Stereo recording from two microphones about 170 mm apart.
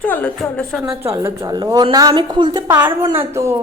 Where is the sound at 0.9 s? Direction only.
15° right (ahead or behind).